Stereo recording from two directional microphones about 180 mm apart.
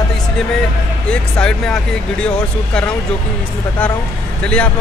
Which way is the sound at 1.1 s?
5° left (ahead or behind).